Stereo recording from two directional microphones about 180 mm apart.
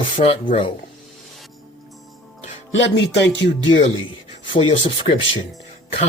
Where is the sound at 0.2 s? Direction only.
35° left (ahead or behind).